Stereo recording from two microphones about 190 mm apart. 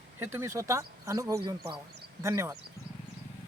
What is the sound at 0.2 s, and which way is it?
A man's voice, 15° right (ahead or behind).